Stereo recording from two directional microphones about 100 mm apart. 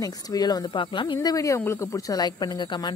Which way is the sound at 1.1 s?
35° left (ahead or behind).